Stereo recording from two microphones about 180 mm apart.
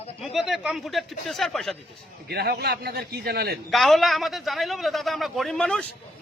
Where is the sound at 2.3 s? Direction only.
60° right (ahead or behind).